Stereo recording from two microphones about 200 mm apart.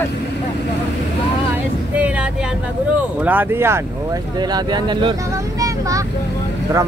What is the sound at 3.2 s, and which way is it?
Speech, 10° right (ahead or behind).